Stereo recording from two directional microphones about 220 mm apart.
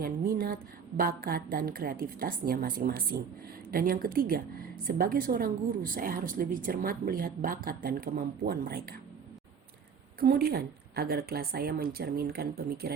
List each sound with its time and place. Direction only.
0.0 s a woman's voice: 40° right (ahead or behind)
10.2 s a woman's voice: 45° right (ahead or behind)